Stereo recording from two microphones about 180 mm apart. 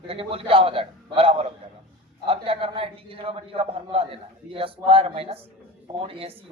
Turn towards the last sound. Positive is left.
turn(degrees=-30)  # may be behind; listen again after turning